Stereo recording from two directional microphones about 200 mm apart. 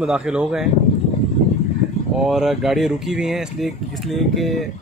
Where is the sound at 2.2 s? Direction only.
Centre (ahead or behind).